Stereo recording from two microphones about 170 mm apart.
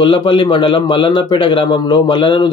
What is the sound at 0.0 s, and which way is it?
A man's voice, 30° left (ahead or behind).